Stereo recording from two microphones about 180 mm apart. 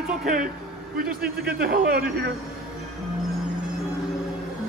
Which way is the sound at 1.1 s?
5° right (ahead or behind).